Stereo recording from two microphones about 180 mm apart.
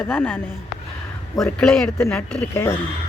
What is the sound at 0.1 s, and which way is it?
Speech, 10° left (ahead or behind).